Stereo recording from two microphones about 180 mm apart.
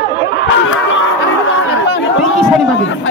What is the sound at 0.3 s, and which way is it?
Snicker, 85° left.